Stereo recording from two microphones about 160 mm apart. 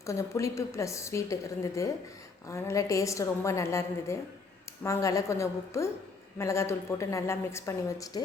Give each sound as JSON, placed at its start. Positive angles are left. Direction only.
{"t": 0.0, "sound": "a woman's voice", "side_deg": 20}